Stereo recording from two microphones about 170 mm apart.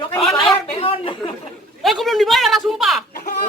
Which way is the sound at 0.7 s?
35° left (ahead or behind).